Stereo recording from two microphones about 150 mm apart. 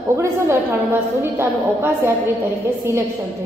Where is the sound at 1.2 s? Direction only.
15° right (ahead or behind).